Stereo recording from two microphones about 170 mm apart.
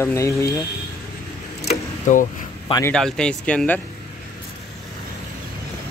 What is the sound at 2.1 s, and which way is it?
Speech, 45° left (ahead or behind).